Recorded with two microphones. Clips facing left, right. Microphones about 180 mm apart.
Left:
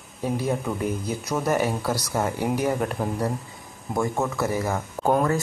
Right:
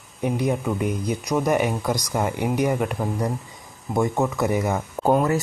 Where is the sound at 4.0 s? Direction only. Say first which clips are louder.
Right 3 dB; 15° right (ahead or behind).